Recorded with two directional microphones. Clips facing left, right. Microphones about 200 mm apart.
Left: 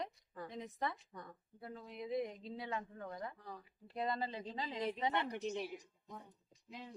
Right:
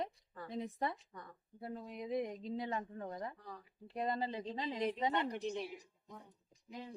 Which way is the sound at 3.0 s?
25° right (ahead or behind).